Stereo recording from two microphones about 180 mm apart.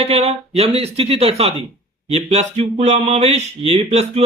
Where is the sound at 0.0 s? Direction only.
35° right (ahead or behind).